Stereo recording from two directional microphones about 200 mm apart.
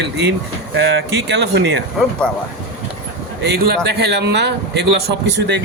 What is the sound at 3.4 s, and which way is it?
Speech, 55° right (ahead or behind).